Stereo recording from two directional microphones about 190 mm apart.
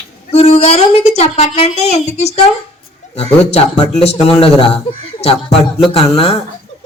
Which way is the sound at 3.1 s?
35° left (ahead or behind).